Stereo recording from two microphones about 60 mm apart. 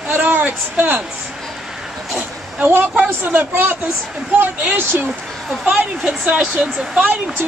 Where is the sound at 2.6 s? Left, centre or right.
Right.